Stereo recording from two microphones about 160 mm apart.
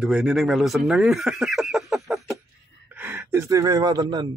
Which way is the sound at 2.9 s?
10° right (ahead or behind).